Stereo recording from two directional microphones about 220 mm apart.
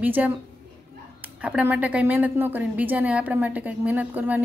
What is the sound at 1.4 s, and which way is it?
A woman's voice, 5° right (ahead or behind).